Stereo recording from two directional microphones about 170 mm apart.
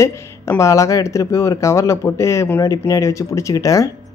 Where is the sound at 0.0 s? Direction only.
15° left (ahead or behind).